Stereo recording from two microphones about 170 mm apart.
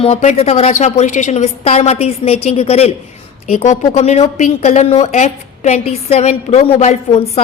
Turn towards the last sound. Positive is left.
turn(degrees=40)  # may be behind; listen again after turning